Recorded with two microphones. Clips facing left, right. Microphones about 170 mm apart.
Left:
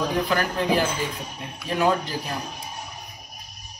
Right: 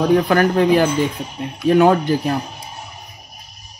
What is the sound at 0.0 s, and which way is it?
Speech, 60° right (ahead or behind).